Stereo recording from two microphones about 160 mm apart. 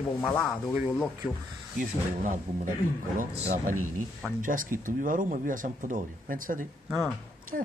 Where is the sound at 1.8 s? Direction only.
55° right (ahead or behind).